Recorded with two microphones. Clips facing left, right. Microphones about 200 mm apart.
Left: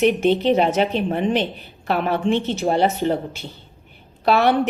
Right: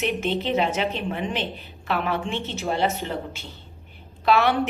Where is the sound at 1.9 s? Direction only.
55° left (ahead or behind).